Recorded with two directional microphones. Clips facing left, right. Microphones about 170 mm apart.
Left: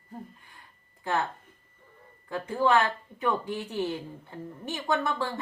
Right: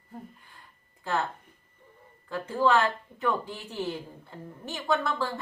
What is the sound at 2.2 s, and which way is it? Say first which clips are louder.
Speech: even; 15° left (ahead or behind).